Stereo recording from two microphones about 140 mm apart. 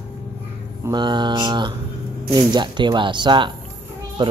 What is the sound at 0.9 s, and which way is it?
Speech, 35° right (ahead or behind).